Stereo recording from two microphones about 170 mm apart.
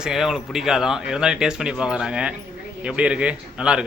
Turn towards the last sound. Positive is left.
turn(degrees=-5)  # may be behind; listen again after turning